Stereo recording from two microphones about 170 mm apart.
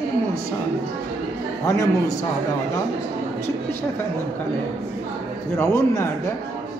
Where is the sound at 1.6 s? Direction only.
15° left (ahead or behind).